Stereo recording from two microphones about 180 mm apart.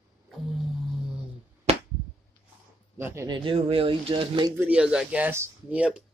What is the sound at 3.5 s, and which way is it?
Speech, 30° right (ahead or behind).